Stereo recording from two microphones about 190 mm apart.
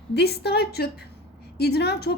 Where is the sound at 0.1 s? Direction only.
60° left (ahead or behind).